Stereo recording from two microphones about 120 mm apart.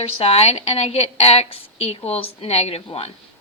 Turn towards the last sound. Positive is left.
turn(degrees=60)  # may be behind; listen again after turning